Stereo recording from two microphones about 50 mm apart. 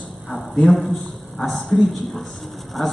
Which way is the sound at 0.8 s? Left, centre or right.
Centre.